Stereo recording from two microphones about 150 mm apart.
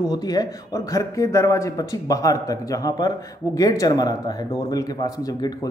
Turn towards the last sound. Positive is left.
turn(degrees=25)  # may be behind; listen again after turning